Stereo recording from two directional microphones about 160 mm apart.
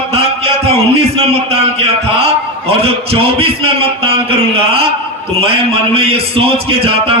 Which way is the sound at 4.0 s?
35° right (ahead or behind).